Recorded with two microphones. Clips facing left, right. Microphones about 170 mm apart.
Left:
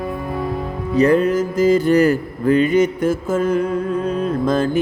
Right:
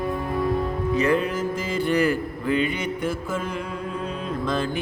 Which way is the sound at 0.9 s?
40° left (ahead or behind).